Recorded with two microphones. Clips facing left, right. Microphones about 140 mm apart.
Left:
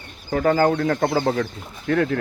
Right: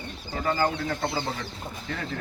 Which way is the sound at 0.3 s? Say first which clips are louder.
Left 8 dB; 50° left (ahead or behind).